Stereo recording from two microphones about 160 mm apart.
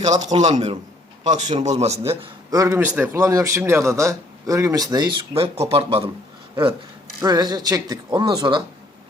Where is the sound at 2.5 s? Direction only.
20° right (ahead or behind); by 6.0 s 35° right (ahead or behind).